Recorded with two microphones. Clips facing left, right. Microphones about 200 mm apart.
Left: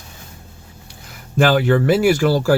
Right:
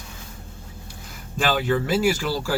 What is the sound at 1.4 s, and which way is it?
Speech, 60° left (ahead or behind).